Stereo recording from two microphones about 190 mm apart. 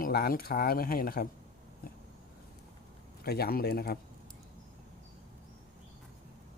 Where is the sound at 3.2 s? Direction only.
55° left (ahead or behind).